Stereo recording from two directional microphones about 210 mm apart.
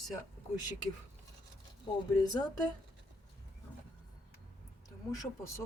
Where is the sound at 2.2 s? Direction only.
20° left (ahead or behind).